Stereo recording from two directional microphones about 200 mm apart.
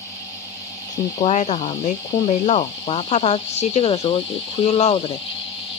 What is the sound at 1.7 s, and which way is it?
Speech, 15° left (ahead or behind).